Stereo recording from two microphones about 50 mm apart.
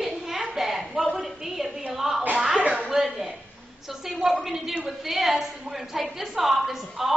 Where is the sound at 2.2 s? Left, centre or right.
Right.